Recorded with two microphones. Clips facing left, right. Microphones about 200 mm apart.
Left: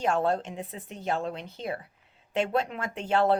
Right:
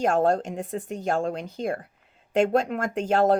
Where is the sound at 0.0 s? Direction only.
45° right (ahead or behind).